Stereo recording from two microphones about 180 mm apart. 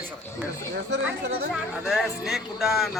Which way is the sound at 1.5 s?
Centre (ahead or behind).